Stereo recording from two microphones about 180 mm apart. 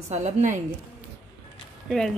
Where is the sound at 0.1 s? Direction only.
40° right (ahead or behind).